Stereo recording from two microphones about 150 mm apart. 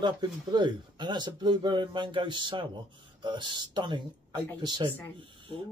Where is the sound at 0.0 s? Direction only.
30° right (ahead or behind).